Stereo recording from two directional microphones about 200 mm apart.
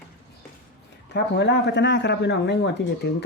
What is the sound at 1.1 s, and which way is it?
Speech, 55° left (ahead or behind).